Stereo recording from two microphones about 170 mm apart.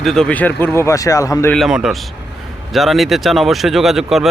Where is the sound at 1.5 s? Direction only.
5° right (ahead or behind).